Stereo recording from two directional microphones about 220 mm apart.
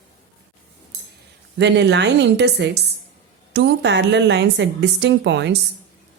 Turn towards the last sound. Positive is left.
turn(degrees=-55)  # may be behind; listen again after turning